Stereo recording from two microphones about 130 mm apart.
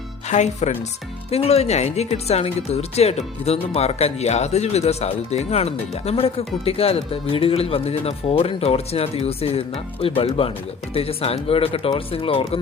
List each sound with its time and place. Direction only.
0.3 s speech: 65° left (ahead or behind)
1.3 s speech: 50° left (ahead or behind)